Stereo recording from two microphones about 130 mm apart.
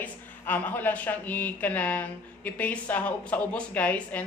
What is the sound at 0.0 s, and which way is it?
A woman's voice, 15° left (ahead or behind).